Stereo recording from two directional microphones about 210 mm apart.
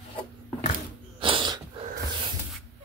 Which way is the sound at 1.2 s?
25° right (ahead or behind).